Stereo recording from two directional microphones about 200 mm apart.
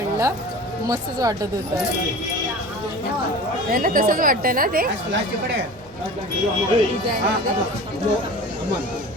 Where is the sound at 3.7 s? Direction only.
45° right (ahead or behind).